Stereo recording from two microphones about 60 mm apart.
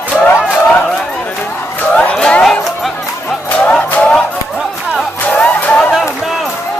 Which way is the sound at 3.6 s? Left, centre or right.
Left.